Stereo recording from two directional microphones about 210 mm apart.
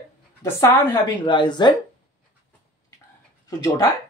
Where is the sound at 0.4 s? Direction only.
15° left (ahead or behind).